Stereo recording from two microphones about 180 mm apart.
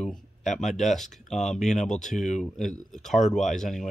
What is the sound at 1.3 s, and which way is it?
Speech, 40° left (ahead or behind).